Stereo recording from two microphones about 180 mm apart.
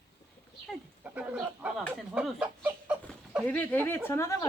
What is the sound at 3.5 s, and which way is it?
Speech, 10° left (ahead or behind).